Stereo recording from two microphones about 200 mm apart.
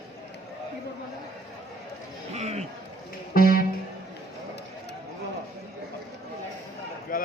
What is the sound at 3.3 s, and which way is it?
Music, 50° left (ahead or behind).